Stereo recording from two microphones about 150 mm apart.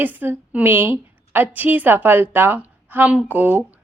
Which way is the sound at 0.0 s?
10° right (ahead or behind).